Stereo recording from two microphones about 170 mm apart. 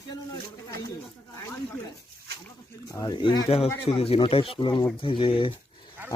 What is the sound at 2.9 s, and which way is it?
Speech, 25° left (ahead or behind).